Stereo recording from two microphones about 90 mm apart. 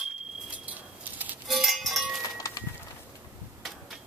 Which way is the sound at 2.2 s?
45° left (ahead or behind).